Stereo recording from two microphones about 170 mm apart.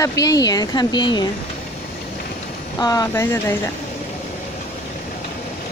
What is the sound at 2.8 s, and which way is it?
Speech, 20° left (ahead or behind).